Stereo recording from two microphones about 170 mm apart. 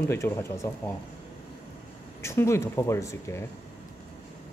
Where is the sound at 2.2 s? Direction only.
15° left (ahead or behind).